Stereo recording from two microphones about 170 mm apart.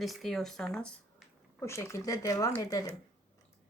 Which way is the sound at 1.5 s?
15° left (ahead or behind).